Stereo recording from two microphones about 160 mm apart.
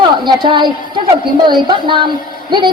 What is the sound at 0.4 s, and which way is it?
A woman's voice, 30° right (ahead or behind).